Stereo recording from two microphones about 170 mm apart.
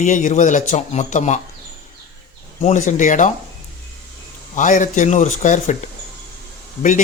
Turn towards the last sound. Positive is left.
turn(degrees=50)  # may be behind; listen again after turning